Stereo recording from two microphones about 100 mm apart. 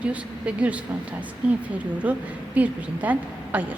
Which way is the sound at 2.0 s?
15° right (ahead or behind).